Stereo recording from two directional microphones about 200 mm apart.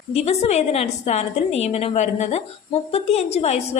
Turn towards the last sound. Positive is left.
turn(degrees=30)  # may be behind; listen again after turning